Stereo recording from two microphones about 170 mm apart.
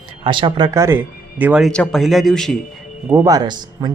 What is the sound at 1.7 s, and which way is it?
Speech, 5° left (ahead or behind).